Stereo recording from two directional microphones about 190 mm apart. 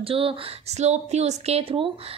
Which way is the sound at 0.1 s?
30° right (ahead or behind).